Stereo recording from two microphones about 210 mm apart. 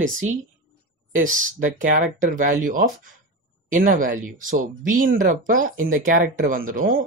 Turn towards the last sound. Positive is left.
turn(degrees=-40)  # may be behind; listen again after turning